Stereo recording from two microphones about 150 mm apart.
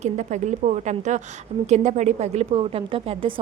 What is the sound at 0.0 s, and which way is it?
A woman's voice, 50° right (ahead or behind).